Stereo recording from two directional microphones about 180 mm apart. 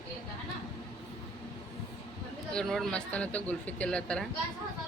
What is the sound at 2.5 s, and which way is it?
Speech, centre (ahead or behind).